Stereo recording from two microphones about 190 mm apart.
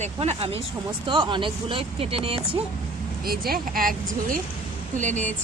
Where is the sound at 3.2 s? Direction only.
50° right (ahead or behind).